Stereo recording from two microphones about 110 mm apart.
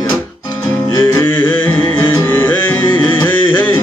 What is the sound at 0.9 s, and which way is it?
Music, 25° left (ahead or behind).